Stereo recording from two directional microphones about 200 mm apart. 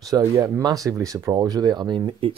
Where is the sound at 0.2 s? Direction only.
20° right (ahead or behind).